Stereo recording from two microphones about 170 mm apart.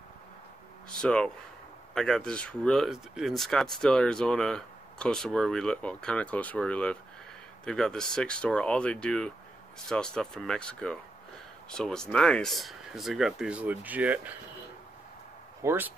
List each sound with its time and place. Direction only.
1.0 s speech: 5° left (ahead or behind)
15.6 s speech: 15° right (ahead or behind)